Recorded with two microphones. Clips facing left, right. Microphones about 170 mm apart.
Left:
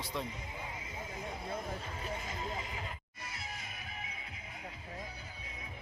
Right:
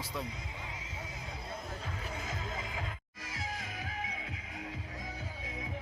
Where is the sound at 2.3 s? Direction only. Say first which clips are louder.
Even; 90° right.